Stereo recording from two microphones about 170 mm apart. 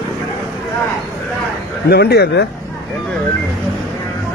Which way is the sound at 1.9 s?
70° left (ahead or behind).